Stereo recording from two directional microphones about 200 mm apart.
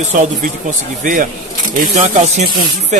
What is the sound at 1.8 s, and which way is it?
Speech, 40° right (ahead or behind).